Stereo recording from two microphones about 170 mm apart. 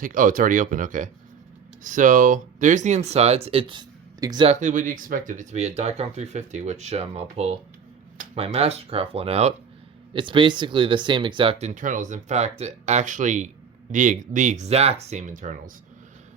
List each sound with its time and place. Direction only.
0.0 s speech: 50° right (ahead or behind); by 4.4 s 25° right (ahead or behind)
4.4 s speech: 50° right (ahead or behind)